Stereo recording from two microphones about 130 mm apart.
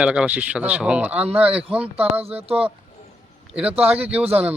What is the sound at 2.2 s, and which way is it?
Speech, 50° right (ahead or behind).